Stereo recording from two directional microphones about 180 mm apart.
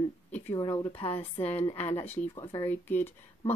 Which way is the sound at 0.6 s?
25° left (ahead or behind).